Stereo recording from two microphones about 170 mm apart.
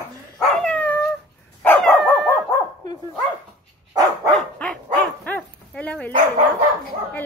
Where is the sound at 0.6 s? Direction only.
5° left (ahead or behind).